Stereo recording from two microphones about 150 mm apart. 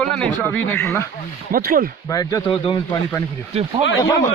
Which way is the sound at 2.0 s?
25° left (ahead or behind).